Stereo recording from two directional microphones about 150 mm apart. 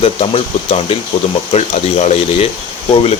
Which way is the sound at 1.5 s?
45° left (ahead or behind).